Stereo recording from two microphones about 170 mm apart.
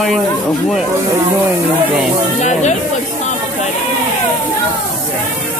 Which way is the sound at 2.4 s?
45° left (ahead or behind).